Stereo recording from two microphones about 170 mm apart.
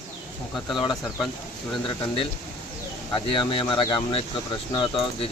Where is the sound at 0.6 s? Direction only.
Centre (ahead or behind).